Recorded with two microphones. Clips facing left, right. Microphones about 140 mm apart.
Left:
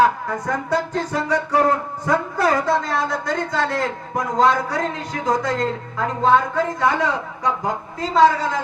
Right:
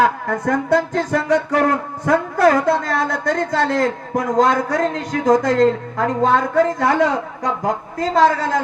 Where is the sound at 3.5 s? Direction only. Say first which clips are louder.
Right 4 dB; 40° right (ahead or behind).